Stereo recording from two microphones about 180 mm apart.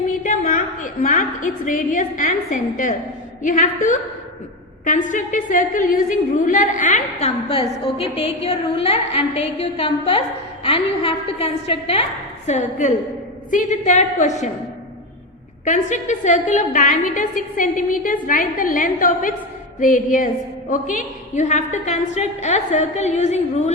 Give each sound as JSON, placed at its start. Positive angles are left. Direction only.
{"t": 0.1, "sound": "a woman's voice", "side_deg": 50}
{"t": 7.5, "sound": "a woman's voice", "side_deg": 30}
{"t": 15.6, "sound": "a woman's voice", "side_deg": 45}